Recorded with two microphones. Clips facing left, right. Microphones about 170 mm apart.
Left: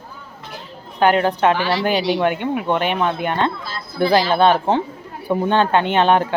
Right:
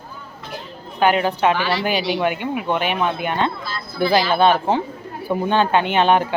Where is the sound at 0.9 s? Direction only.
10° right (ahead or behind).